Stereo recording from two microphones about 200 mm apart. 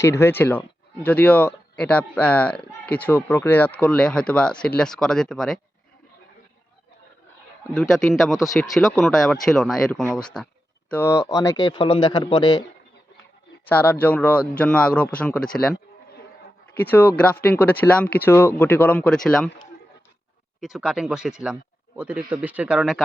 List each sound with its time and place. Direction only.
0.0 s speech: 15° left (ahead or behind)
7.7 s speech: centre (ahead or behind); by 12.6 s 20° left (ahead or behind)
13.7 s speech: 10° left (ahead or behind)
20.6 s speech: centre (ahead or behind)